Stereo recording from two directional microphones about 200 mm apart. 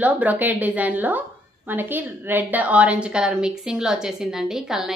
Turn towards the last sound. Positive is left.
turn(degrees=0)  # may be behind; listen again after turning